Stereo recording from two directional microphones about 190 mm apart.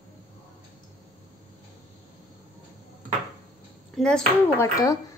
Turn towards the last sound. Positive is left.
turn(degrees=20)  # may be behind; listen again after turning